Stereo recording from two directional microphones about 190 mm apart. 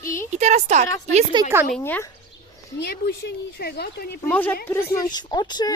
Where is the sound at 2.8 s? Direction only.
55° left (ahead or behind).